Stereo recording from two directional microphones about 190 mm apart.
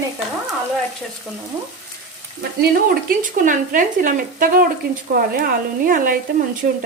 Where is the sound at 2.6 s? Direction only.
50° right (ahead or behind).